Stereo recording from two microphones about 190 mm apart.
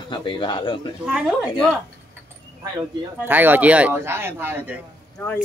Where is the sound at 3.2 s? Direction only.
10° right (ahead or behind).